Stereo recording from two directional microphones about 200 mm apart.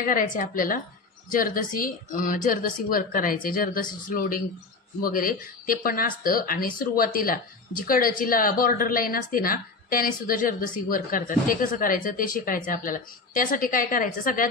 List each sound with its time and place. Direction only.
0.0 s speech: 45° left (ahead or behind)